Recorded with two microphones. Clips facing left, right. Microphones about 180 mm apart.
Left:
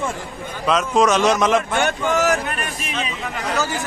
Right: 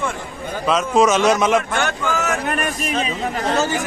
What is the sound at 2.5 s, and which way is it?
Speech, 40° right (ahead or behind).